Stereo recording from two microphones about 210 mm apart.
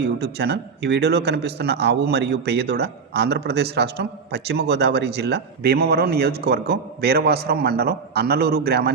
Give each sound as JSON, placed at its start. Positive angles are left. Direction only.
{"t": 0.0, "sound": "speech", "side_deg": -50}